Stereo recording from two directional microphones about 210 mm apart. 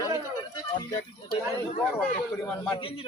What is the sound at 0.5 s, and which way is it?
Music, 20° left (ahead or behind).